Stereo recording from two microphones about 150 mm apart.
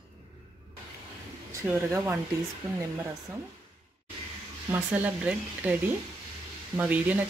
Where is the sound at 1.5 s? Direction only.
15° right (ahead or behind).